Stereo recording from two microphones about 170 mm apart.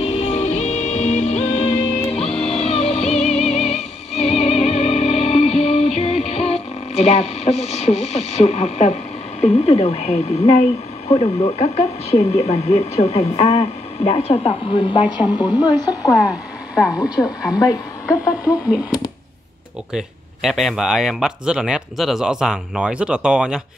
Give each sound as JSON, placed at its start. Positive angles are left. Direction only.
{"t": 0.0, "sound": "music", "side_deg": 40}
{"t": 9.4, "sound": "speech", "side_deg": 35}
{"t": 19.9, "sound": "speech", "side_deg": 0}